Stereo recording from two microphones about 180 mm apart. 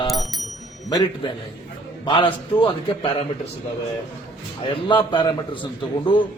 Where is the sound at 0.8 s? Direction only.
25° left (ahead or behind).